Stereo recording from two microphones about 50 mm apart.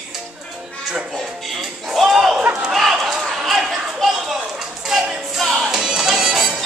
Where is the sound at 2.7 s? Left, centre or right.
Centre.